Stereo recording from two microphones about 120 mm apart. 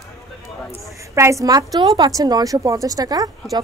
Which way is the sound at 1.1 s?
25° right (ahead or behind).